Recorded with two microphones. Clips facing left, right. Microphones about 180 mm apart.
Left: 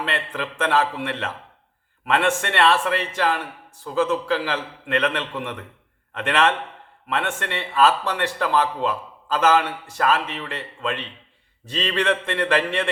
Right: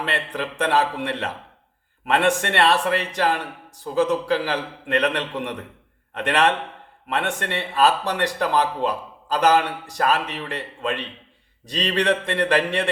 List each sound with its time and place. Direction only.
0.1 s speech: 40° right (ahead or behind)
2.0 s speech: 40° right (ahead or behind)
5.2 s a man's voice: 20° right (ahead or behind)
6.1 s speech: 35° right (ahead or behind)